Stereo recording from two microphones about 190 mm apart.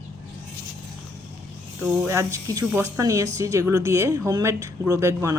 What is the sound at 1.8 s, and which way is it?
Speech, 10° right (ahead or behind).